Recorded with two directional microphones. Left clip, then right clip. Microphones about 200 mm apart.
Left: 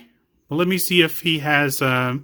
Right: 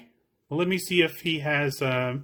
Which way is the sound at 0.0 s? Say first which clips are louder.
Left 4 dB; 30° left (ahead or behind).